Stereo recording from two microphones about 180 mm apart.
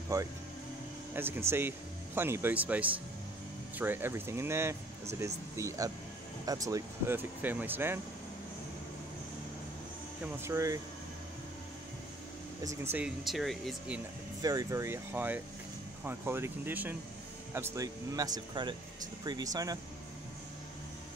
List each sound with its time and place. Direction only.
0.1 s speech: 20° right (ahead or behind)
10.2 s speech: 15° right (ahead or behind)
12.6 s speech: 10° right (ahead or behind)
14.4 s speech: 20° right (ahead or behind)